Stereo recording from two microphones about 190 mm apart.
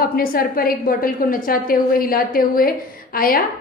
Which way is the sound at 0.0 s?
50° left (ahead or behind).